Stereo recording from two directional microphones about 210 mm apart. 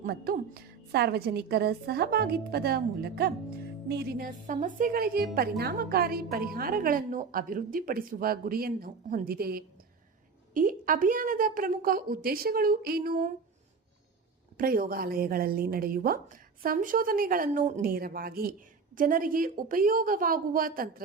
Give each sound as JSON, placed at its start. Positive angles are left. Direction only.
{"t": 0.0, "sound": "a woman's voice", "side_deg": -45}
{"t": 14.6, "sound": "a woman's voice", "side_deg": -45}